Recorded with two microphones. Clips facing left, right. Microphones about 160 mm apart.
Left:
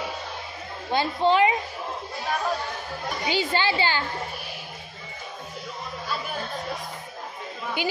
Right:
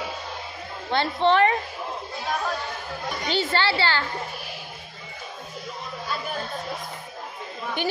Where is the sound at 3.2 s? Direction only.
15° left (ahead or behind).